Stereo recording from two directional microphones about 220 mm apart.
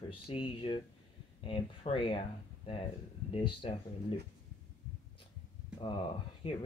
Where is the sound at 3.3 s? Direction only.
25° left (ahead or behind).